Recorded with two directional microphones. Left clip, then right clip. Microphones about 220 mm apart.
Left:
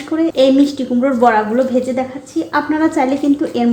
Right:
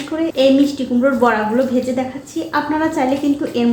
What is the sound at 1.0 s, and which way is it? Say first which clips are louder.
A woman's voice: left 3 dB; 35° left (ahead or behind).